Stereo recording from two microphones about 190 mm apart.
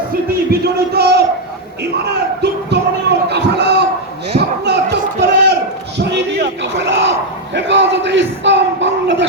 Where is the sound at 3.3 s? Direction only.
65° right (ahead or behind).